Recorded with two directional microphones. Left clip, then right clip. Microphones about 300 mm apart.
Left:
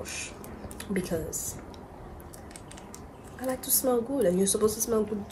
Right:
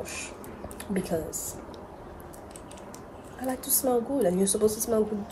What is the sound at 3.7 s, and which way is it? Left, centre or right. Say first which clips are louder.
Speech: right 1 dB; centre.